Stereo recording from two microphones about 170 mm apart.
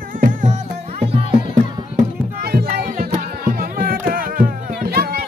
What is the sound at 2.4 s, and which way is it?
Music, 65° right (ahead or behind).